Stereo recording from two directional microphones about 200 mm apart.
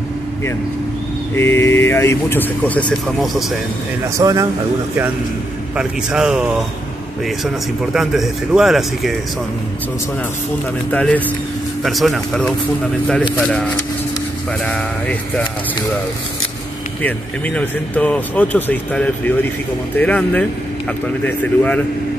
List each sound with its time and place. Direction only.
1.3 s speech: 10° left (ahead or behind)
4.2 s a man's voice: 15° right (ahead or behind)
5.8 s a man's voice: 5° right (ahead or behind)
7.9 s a man's voice: centre (ahead or behind)
10.9 s a man's voice: 5° left (ahead or behind)
17.0 s speech: 5° left (ahead or behind)